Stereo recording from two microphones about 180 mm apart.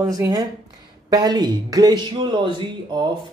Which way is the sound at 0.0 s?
20° right (ahead or behind).